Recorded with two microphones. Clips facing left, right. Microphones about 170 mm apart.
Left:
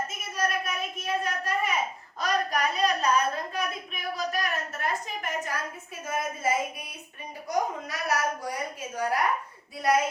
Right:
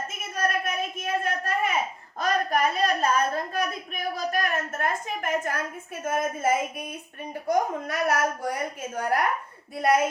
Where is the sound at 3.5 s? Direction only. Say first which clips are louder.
Right 3 dB; 50° right (ahead or behind).